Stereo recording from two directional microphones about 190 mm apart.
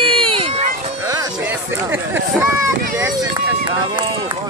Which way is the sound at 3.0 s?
20° right (ahead or behind).